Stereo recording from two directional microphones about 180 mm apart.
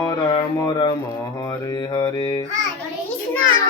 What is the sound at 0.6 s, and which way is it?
Mantra, 20° left (ahead or behind).